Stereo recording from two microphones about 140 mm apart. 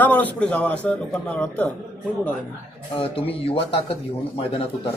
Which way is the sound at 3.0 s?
40° left (ahead or behind).